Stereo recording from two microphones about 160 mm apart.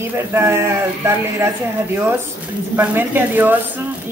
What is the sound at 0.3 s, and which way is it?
Speech, 15° right (ahead or behind).